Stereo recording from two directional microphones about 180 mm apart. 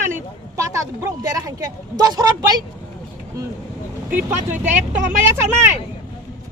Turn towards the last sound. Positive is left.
turn(degrees=-15)  # may be behind; listen again after turning